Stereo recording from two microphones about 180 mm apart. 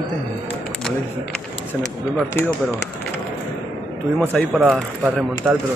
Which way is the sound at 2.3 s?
15° left (ahead or behind).